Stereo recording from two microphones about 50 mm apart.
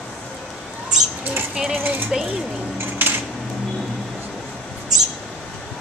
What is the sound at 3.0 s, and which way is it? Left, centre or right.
Dishes, right.